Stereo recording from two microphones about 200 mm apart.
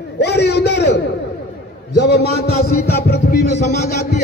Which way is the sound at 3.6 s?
35° left (ahead or behind).